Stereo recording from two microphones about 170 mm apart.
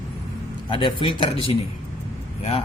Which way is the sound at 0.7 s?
30° left (ahead or behind).